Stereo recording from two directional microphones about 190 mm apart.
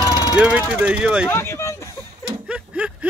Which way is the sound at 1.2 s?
15° left (ahead or behind).